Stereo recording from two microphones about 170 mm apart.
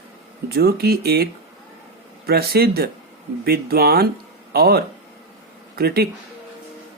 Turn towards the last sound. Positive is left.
turn(degrees=-65)  # may be behind; listen again after turning